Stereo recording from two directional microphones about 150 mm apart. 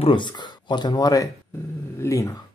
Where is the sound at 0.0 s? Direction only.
30° left (ahead or behind).